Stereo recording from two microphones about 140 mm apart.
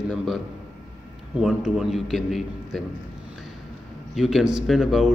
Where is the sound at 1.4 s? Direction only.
5° right (ahead or behind).